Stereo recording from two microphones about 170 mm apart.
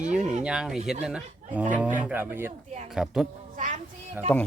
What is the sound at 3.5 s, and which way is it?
Child singing, 45° right (ahead or behind).